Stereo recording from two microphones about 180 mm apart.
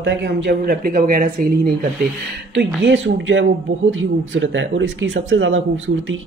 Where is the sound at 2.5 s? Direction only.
80° right.